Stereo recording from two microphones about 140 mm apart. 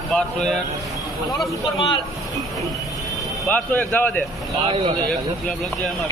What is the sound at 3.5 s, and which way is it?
Speech, 10° left (ahead or behind).